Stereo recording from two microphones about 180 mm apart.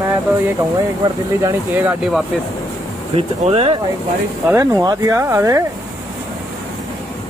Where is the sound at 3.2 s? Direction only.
30° right (ahead or behind).